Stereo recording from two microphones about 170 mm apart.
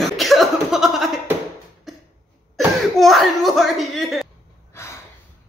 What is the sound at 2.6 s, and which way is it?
A man's voice, centre (ahead or behind).